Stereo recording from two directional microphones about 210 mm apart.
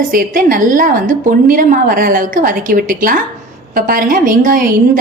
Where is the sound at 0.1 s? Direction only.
40° right (ahead or behind).